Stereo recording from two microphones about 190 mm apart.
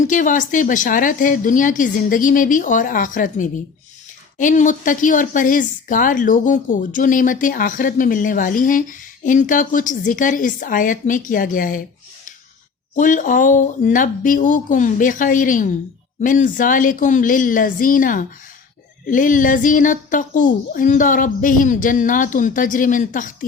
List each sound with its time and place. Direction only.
0.0 s a woman's voice: 45° left (ahead or behind)
13.0 s a woman's voice: 45° left (ahead or behind)